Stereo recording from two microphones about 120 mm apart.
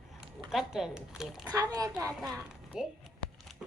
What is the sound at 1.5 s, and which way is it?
Speech, 30° right (ahead or behind).